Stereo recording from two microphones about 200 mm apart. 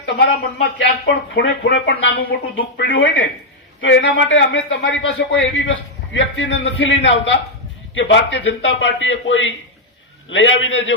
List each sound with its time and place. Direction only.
0.0 s a man's voice: 60° left (ahead or behind)